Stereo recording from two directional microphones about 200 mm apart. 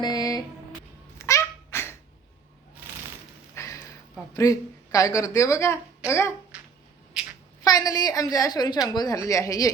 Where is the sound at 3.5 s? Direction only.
15° left (ahead or behind).